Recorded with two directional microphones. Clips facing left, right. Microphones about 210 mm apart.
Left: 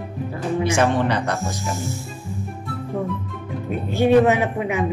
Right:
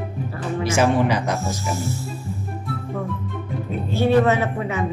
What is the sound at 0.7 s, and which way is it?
Speech, 5° right (ahead or behind).